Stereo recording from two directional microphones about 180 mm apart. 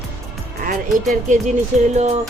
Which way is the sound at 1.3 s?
40° right (ahead or behind).